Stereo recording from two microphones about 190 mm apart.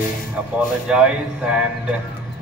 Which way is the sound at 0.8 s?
5° right (ahead or behind).